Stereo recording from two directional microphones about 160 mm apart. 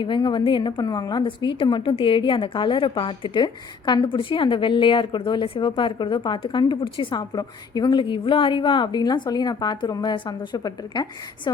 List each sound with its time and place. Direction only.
0.0 s a woman's voice: 30° left (ahead or behind)